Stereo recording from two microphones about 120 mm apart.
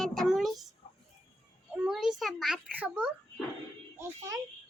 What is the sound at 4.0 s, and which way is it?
Speech, 25° right (ahead or behind).